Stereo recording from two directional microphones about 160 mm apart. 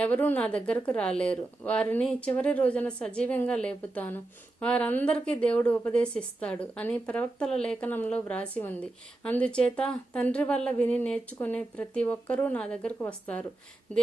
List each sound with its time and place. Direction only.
0.0 s a woman's voice: 10° left (ahead or behind)